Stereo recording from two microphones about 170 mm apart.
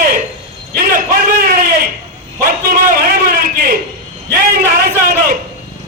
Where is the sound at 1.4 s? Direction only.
60° right (ahead or behind).